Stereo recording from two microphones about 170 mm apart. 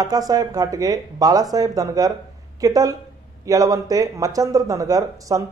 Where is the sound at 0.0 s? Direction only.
20° right (ahead or behind).